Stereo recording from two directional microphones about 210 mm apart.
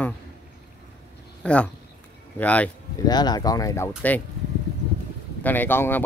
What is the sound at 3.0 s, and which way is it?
Speech, 20° left (ahead or behind).